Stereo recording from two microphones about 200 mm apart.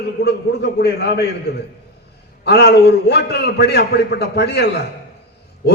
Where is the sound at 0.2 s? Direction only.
55° left (ahead or behind).